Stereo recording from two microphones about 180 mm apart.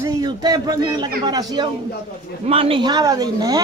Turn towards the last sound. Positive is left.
turn(degrees=-20)  # may be behind; listen again after turning